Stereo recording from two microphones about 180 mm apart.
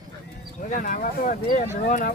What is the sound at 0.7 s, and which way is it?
Speech, 50° left (ahead or behind).